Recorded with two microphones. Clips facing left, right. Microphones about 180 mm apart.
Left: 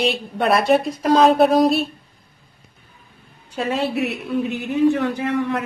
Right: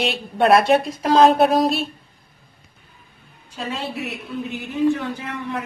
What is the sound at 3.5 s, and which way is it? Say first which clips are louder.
A woman's voice: left 7 dB; 65° left (ahead or behind).